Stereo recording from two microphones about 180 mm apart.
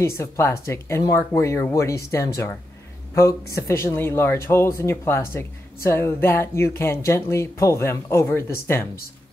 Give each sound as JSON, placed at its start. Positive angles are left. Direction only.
{"t": 0.0, "sound": "speech", "side_deg": 15}